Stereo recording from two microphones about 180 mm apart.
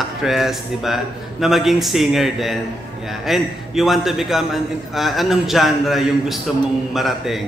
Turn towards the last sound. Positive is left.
turn(degrees=0)  # may be behind; listen again after turning